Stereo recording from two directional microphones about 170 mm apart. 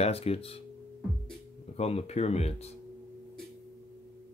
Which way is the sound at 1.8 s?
35° left (ahead or behind).